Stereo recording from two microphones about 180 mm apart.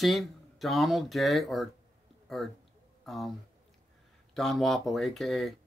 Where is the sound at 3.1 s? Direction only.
Centre (ahead or behind).